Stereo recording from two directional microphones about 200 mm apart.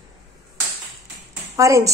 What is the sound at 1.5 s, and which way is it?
Speech, 15° right (ahead or behind).